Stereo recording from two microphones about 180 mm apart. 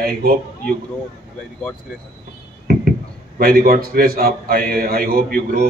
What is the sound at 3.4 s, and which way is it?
A man's voice, 55° right (ahead or behind).